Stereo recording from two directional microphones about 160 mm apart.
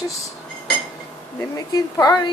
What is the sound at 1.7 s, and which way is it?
Speech, 25° left (ahead or behind).